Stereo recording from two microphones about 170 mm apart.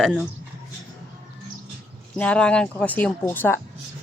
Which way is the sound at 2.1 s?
5° left (ahead or behind).